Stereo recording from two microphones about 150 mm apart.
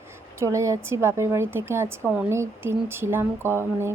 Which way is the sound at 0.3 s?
20° right (ahead or behind).